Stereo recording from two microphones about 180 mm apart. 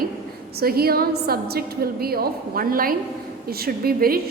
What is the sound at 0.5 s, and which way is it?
A woman's voice, 55° right (ahead or behind).